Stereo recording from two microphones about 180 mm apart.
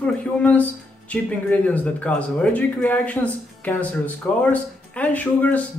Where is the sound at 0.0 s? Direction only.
5° left (ahead or behind).